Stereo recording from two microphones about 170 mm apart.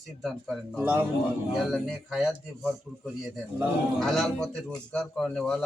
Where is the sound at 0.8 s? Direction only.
10° right (ahead or behind).